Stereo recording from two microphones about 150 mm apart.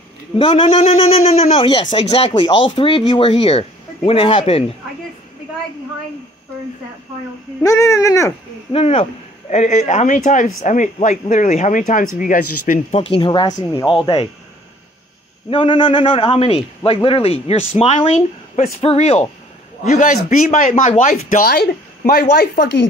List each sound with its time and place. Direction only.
0.4 s a man's voice: 35° left (ahead or behind)
7.6 s speech: 20° left (ahead or behind)
8.7 s speech: 45° left (ahead or behind); by 12.8 s 65° left (ahead or behind)
12.9 s a man's voice: 35° left (ahead or behind)
15.5 s a man's voice: 35° left (ahead or behind)
19.8 s speech: 55° left (ahead or behind); by 22.8 s 90° left